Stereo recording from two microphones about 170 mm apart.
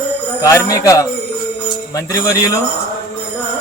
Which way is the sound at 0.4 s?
20° left (ahead or behind).